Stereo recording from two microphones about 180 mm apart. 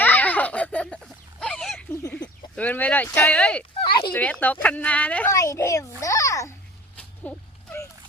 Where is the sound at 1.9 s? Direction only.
5° left (ahead or behind).